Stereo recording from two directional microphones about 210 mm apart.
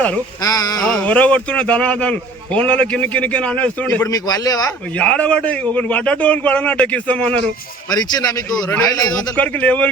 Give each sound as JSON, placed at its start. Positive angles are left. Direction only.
{"t": 0.4, "sound": "a man's voice", "side_deg": 15}
{"t": 0.9, "sound": "a man's voice", "side_deg": 5}
{"t": 4.9, "sound": "a man's voice", "side_deg": 5}
{"t": 7.9, "sound": "a man's voice", "side_deg": 20}
{"t": 9.3, "sound": "a man's voice", "side_deg": 10}